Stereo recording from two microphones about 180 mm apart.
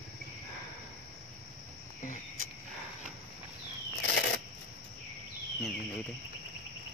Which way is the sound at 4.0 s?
75° left (ahead or behind).